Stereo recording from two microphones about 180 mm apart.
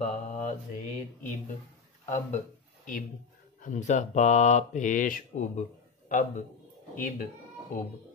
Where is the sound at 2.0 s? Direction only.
40° left (ahead or behind).